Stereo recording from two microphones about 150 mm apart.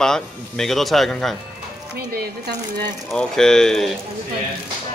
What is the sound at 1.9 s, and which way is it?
Speech, 90° right.